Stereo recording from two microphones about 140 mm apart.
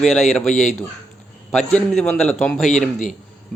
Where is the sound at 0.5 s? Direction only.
60° left (ahead or behind).